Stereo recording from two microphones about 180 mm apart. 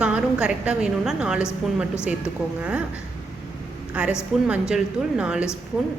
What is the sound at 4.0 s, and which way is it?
A woman's voice, 5° right (ahead or behind).